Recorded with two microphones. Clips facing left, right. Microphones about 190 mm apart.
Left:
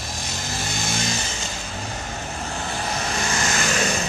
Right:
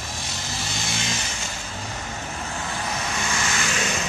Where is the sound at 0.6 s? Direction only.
45° left (ahead or behind).